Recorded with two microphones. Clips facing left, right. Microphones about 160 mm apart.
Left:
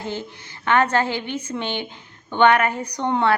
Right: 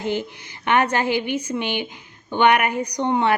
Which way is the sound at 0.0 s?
15° right (ahead or behind).